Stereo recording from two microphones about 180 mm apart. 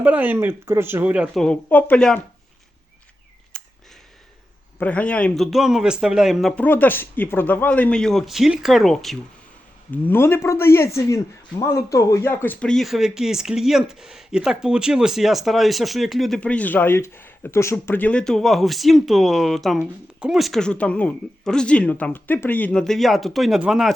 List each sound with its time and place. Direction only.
0.0 s speech: 10° right (ahead or behind); by 2.2 s 5° left (ahead or behind)
3.5 s a sound: 5° left (ahead or behind)
4.8 s speech: 5° left (ahead or behind)
6.6 s speech: 10° left (ahead or behind)
9.9 s speech: 10° left (ahead or behind)